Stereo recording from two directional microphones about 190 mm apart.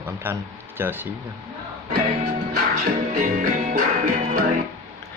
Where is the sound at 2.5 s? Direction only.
45° right (ahead or behind).